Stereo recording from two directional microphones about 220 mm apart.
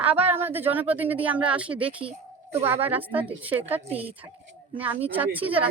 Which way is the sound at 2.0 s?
30° right (ahead or behind).